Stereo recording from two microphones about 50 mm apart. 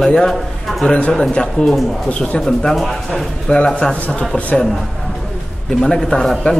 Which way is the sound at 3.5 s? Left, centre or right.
Centre.